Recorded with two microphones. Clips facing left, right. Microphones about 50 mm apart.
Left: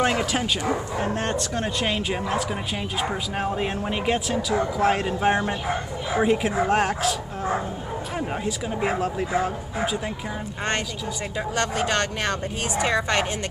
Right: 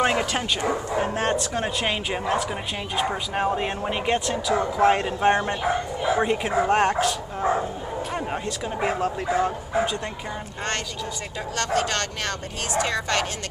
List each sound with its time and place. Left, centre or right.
0.0 s speech: centre
11.5 s speech: centre